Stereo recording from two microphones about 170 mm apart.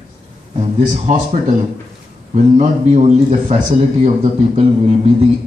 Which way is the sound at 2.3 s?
45° right (ahead or behind).